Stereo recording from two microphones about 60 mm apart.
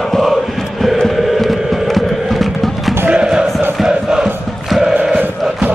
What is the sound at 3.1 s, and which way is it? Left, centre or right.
Chant, centre.